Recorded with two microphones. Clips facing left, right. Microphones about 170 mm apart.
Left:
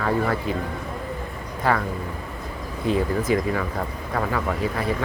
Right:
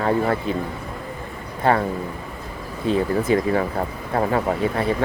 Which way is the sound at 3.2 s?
30° right (ahead or behind).